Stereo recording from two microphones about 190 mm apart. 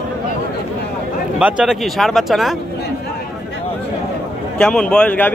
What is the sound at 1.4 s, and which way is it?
Speech, 5° right (ahead or behind).